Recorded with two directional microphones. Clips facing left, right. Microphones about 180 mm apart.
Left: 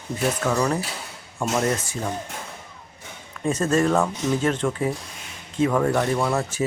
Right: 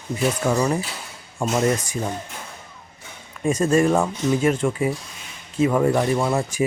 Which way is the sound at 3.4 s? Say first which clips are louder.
Right 3 dB; 10° right (ahead or behind).